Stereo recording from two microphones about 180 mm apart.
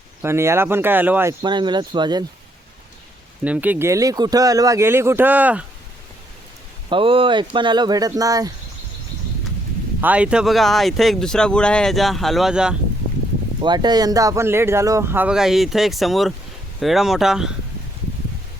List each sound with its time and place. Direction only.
0.2 s speech: 15° right (ahead or behind)
3.4 s speech: 10° right (ahead or behind)
6.9 s speech: 30° right (ahead or behind)
10.0 s speech: 5° right (ahead or behind)
13.6 s speech: 25° right (ahead or behind); by 17.5 s 5° right (ahead or behind)